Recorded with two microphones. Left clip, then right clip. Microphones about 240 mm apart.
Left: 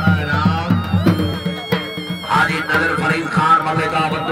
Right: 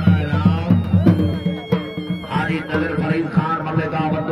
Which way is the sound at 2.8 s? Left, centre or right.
Left.